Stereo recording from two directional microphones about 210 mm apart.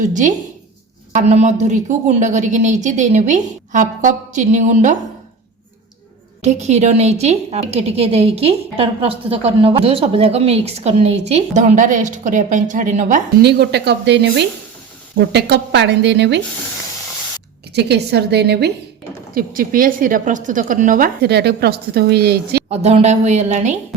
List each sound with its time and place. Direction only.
0.1 s a woman's voice: 35° right (ahead or behind)
6.4 s a woman's voice: 30° right (ahead or behind)
13.4 s a woman's voice: 50° right (ahead or behind)
17.7 s a woman's voice: 50° right (ahead or behind)
22.7 s a woman's voice: 30° right (ahead or behind)